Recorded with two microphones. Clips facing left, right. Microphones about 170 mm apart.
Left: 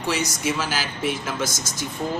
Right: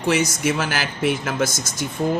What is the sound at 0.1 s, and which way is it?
Speech, 60° right (ahead or behind).